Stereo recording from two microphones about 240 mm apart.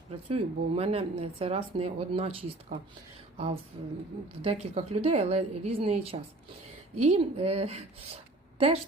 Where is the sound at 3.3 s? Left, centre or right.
Right.